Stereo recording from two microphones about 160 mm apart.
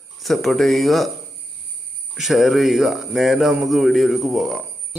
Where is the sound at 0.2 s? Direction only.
Centre (ahead or behind).